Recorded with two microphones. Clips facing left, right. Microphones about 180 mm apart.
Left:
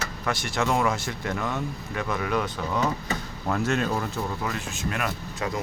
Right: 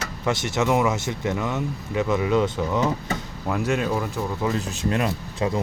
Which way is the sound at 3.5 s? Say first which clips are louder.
Right 2 dB; 10° right (ahead or behind).